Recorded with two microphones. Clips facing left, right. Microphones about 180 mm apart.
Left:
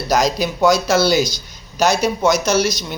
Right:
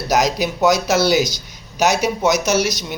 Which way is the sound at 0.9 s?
20° right (ahead or behind).